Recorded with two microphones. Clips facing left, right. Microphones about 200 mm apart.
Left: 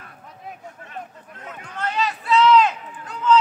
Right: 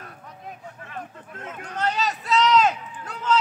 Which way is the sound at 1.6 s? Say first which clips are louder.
Even; 35° right (ahead or behind).